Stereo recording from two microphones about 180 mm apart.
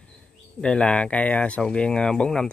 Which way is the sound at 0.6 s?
5° left (ahead or behind).